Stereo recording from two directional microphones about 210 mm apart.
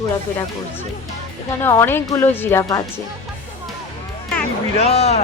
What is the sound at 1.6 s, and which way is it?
Speech, 10° left (ahead or behind).